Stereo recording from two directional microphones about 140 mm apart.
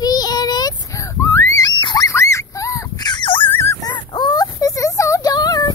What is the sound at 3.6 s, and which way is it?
Dog, 20° left (ahead or behind).